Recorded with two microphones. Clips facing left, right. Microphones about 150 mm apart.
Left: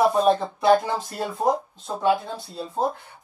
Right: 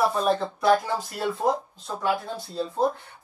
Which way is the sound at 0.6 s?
30° left (ahead or behind).